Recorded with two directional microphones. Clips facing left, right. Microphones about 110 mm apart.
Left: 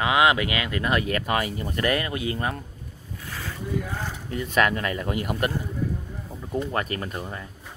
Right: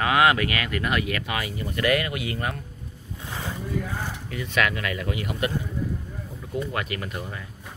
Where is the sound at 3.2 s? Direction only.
20° right (ahead or behind).